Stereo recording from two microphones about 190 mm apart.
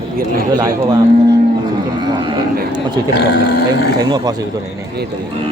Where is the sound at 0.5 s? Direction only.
20° right (ahead or behind).